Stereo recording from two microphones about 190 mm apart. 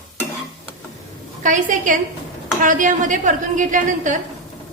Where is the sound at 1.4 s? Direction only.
40° right (ahead or behind).